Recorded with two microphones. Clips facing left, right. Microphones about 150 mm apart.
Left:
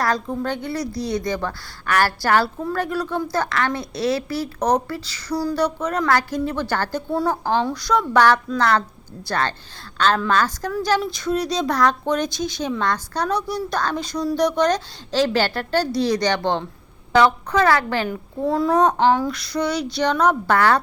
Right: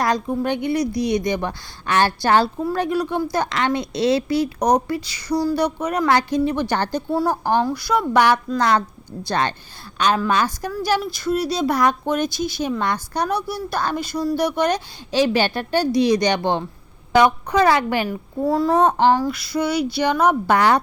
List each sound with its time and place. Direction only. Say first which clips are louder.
0.0 s speech: right 2 dB; 15° right (ahead or behind)
7.1 s speech: right 1 dB; 5° right (ahead or behind)
18.1 s speech: right 2 dB; centre (ahead or behind)